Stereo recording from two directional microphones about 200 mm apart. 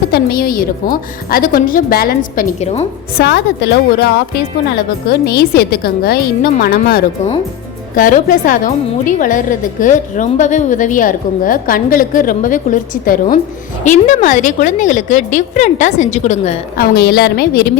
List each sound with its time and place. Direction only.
0.1 s a woman's voice: 50° left (ahead or behind); by 2.8 s 35° left (ahead or behind)
3.2 s a woman's voice: 55° left (ahead or behind); by 16.6 s 35° left (ahead or behind)
16.7 s a woman's voice: 50° left (ahead or behind)